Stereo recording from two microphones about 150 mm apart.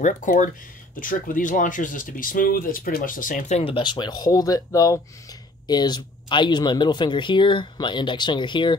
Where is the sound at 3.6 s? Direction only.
30° left (ahead or behind).